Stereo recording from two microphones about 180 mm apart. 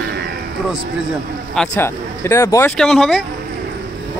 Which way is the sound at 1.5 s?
10° left (ahead or behind).